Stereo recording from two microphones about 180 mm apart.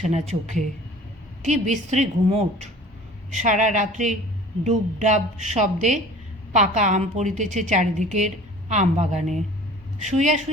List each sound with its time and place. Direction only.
0.0 s a woman's voice: 40° right (ahead or behind)